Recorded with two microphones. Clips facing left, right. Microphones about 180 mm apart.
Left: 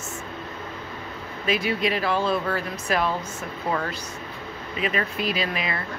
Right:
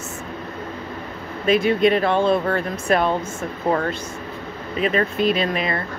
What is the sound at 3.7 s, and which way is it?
Speech, 50° right (ahead or behind).